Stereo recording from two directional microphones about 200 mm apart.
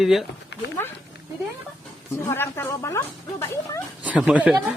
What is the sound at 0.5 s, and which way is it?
Dog, 60° left (ahead or behind).